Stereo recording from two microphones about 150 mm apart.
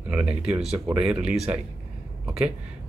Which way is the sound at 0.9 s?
5° right (ahead or behind).